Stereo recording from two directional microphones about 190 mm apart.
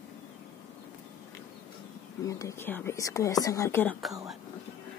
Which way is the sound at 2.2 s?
15° left (ahead or behind).